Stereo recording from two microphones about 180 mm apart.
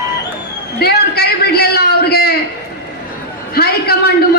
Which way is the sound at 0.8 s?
60° left (ahead or behind).